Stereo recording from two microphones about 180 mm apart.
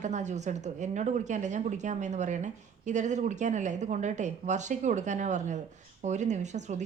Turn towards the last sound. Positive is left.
turn(degrees=-40)  # may be behind; listen again after turning